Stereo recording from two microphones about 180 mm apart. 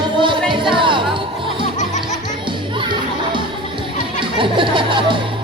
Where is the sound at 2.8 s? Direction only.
25° right (ahead or behind).